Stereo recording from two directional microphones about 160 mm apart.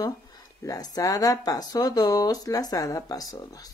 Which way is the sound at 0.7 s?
25° left (ahead or behind).